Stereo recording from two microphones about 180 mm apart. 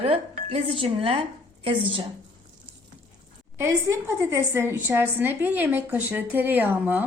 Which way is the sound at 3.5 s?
15° right (ahead or behind).